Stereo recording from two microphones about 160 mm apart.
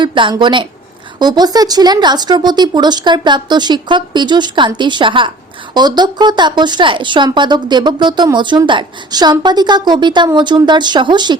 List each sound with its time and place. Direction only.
0.0 s a woman's voice: 30° right (ahead or behind)